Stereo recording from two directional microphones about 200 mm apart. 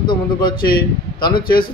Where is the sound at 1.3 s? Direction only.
45° left (ahead or behind).